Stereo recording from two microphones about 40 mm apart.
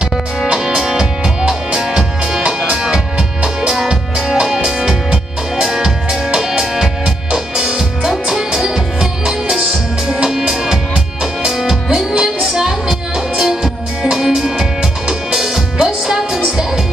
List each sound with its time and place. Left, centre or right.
0.5 s music: centre
10.1 s music: centre